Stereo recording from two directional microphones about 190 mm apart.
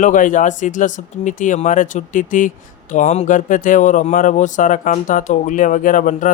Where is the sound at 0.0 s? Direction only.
45° left (ahead or behind).